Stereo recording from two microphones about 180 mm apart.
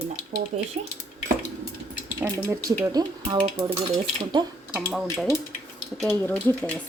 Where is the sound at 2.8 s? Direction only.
25° right (ahead or behind).